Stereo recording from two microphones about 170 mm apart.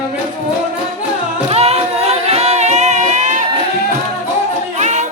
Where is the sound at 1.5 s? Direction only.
40° right (ahead or behind).